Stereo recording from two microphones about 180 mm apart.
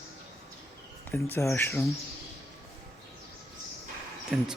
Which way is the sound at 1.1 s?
15° left (ahead or behind).